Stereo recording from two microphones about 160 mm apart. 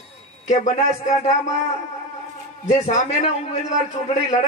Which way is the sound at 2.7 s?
45° left (ahead or behind).